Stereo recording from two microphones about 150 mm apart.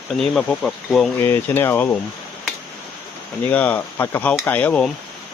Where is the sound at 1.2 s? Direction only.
15° left (ahead or behind).